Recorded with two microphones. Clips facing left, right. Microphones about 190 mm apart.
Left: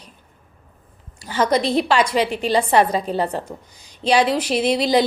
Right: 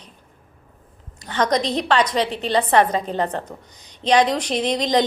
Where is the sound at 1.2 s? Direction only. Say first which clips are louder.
Left 2 dB; 5° left (ahead or behind).